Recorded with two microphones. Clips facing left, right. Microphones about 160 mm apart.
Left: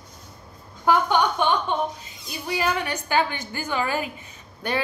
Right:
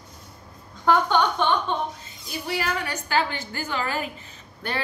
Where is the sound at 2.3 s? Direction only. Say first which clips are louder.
Left 2 dB; 20° left (ahead or behind).